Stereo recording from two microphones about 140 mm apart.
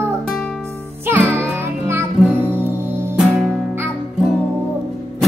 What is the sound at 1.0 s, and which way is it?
Music, 15° right (ahead or behind).